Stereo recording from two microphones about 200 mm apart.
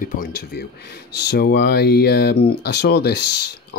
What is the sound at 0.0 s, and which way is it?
Speech, 45° left (ahead or behind).